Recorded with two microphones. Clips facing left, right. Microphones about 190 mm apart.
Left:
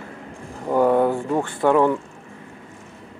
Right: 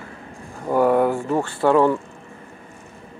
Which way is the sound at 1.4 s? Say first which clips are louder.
Right 1 dB; 20° left (ahead or behind).